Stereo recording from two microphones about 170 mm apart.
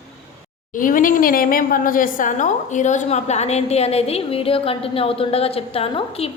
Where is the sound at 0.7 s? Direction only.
50° left (ahead or behind).